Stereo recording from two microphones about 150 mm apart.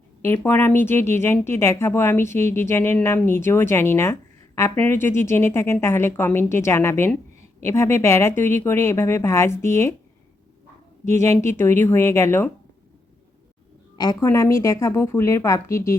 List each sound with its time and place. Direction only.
0.4 s speech: 15° left (ahead or behind)
11.0 s speech: 15° left (ahead or behind)
14.0 s speech: 25° left (ahead or behind)